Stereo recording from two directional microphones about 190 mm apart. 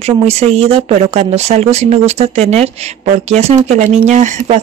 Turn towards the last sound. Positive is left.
turn(degrees=-40)  # may be behind; listen again after turning